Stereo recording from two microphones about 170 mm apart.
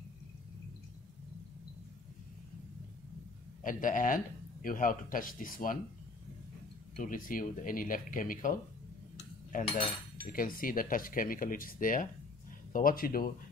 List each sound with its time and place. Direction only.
3.6 s speech: 50° left (ahead or behind)
7.0 s speech: 55° left (ahead or behind)
10.2 s speech: 55° left (ahead or behind)